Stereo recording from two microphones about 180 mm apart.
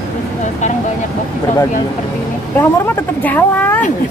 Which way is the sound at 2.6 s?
10° left (ahead or behind).